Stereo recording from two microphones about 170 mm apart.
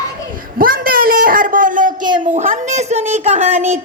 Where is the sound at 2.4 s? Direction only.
50° right (ahead or behind).